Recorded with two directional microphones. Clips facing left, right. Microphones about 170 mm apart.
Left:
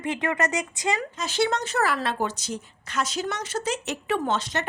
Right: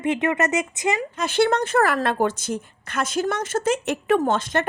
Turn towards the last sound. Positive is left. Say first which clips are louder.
# right 6 dB
turn(degrees=-50)  # may be behind; listen again after turning